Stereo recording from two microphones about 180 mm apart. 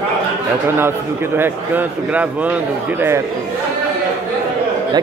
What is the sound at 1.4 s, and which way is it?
A man's voice, 10° right (ahead or behind).